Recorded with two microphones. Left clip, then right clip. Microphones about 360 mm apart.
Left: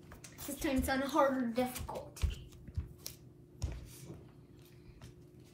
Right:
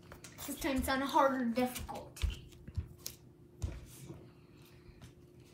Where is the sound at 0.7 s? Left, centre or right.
Centre.